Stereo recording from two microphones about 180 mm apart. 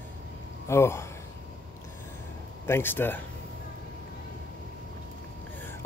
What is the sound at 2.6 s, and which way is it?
Speech, 10° left (ahead or behind).